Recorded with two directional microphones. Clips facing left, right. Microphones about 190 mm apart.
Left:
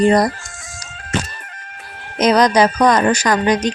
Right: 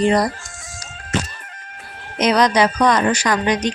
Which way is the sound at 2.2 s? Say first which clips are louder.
Left 3 dB; 40° left (ahead or behind).